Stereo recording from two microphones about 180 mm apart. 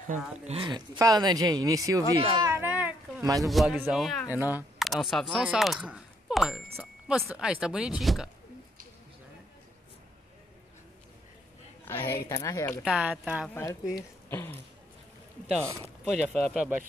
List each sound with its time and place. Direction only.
0.0 s speech: 45° right (ahead or behind)
0.6 s speech: 25° right (ahead or behind); by 4.3 s centre (ahead or behind)
4.3 s speech: 10° right (ahead or behind)
11.8 s speech: 15° left (ahead or behind)
12.8 s speech: 5° right (ahead or behind)
13.5 s speech: 15° left (ahead or behind)
16.3 s speech: 5° right (ahead or behind)